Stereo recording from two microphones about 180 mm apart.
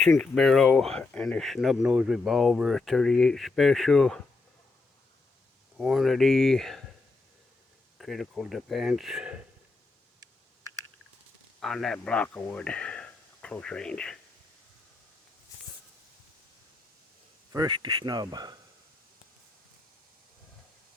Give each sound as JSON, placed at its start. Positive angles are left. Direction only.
{"t": 0.0, "sound": "speech", "side_deg": 0}
{"t": 5.7, "sound": "speech", "side_deg": 0}
{"t": 7.9, "sound": "speech", "side_deg": 0}
{"t": 11.6, "sound": "speech", "side_deg": 0}
{"t": 17.5, "sound": "speech", "side_deg": -20}